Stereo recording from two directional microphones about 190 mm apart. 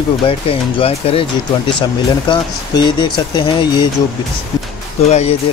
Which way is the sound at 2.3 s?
25° left (ahead or behind).